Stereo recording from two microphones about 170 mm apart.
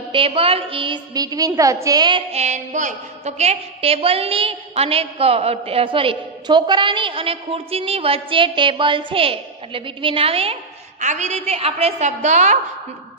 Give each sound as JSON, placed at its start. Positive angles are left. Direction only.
{"t": 0.1, "sound": "a woman's voice", "side_deg": -35}
{"t": 2.3, "sound": "a woman's voice", "side_deg": -45}